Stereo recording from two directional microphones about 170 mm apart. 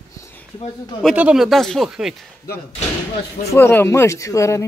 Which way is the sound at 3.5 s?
15° left (ahead or behind).